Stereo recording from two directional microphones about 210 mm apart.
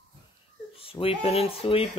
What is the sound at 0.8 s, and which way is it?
Speech, 25° left (ahead or behind).